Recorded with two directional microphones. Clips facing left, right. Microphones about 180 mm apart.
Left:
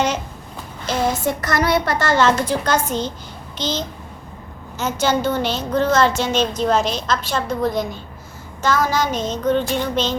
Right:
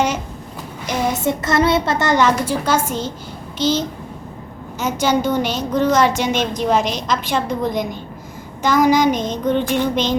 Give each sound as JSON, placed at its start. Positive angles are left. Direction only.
{"t": 0.9, "sound": "a woman's voice", "side_deg": -20}